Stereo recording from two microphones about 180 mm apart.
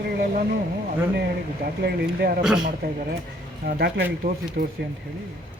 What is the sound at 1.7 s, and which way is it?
Speech, 65° right (ahead or behind).